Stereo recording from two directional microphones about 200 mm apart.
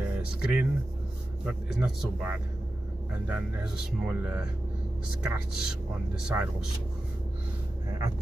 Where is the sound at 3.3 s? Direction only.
10° right (ahead or behind).